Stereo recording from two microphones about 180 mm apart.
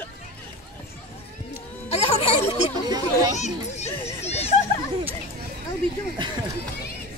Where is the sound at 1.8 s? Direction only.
35° left (ahead or behind).